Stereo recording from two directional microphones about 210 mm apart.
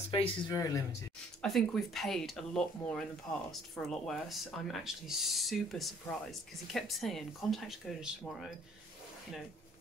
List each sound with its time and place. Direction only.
0.1 s speech: 25° left (ahead or behind)
1.4 s speech: centre (ahead or behind)